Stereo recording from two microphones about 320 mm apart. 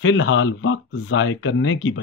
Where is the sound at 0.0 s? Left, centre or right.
Left.